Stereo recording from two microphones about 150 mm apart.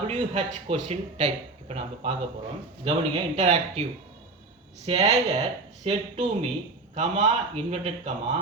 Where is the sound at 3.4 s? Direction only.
45° right (ahead or behind).